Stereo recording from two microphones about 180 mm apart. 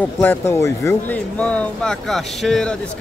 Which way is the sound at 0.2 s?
10° left (ahead or behind).